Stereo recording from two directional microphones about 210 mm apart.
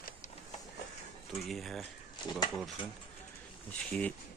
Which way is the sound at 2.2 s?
20° left (ahead or behind).